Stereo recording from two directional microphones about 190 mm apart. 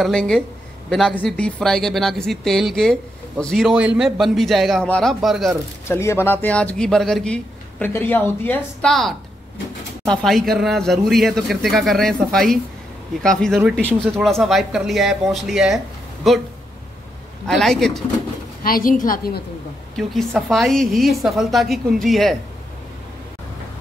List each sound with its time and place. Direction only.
0.0 s speech: 5° left (ahead or behind)
5.9 s a man's voice: 15° left (ahead or behind)
17.5 s speech: centre (ahead or behind)
18.6 s a woman's voice: 50° left (ahead or behind)
20.0 s speech: centre (ahead or behind)